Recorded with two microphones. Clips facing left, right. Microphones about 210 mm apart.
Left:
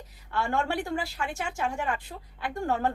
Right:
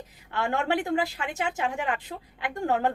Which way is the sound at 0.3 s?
20° right (ahead or behind).